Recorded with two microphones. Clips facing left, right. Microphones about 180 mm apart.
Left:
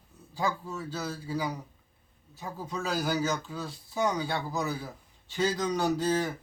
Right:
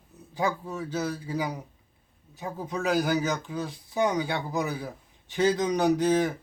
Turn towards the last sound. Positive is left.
turn(degrees=-15)  # may be behind; listen again after turning